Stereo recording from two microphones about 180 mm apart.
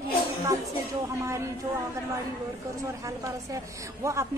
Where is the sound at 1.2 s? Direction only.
15° right (ahead or behind).